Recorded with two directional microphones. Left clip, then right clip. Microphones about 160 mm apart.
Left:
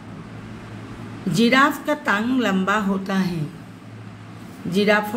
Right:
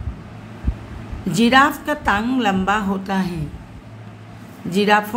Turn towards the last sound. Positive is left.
turn(degrees=-20)  # may be behind; listen again after turning